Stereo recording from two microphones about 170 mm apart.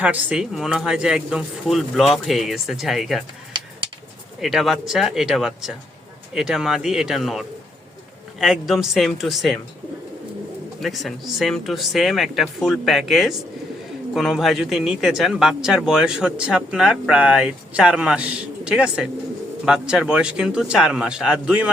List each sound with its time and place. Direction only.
0.0 s speech: 5° right (ahead or behind)
4.4 s speech: centre (ahead or behind)
10.8 s speech: centre (ahead or behind)